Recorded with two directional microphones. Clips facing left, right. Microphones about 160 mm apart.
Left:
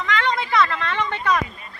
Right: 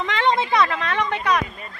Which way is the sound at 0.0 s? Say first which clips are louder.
Right 2 dB; 25° right (ahead or behind).